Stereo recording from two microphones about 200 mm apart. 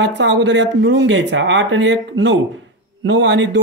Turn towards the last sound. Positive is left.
turn(degrees=-65)  # may be behind; listen again after turning